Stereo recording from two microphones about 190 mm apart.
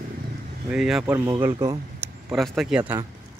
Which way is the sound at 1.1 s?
15° right (ahead or behind).